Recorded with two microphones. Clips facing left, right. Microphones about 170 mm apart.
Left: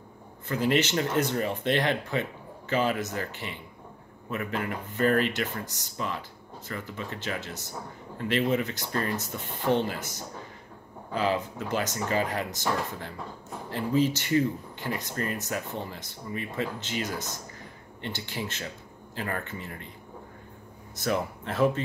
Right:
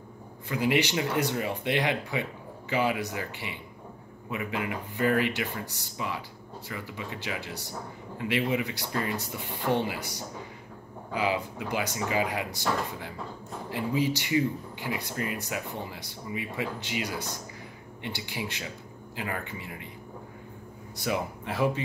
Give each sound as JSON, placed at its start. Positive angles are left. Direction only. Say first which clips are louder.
{"t": 0.5, "sound": "speech", "louder": "left 1 dB", "side_deg": -10}
{"t": 20.9, "sound": "speech", "louder": "left 2 dB", "side_deg": -15}